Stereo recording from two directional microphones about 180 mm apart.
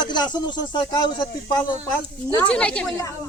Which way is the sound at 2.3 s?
10° left (ahead or behind).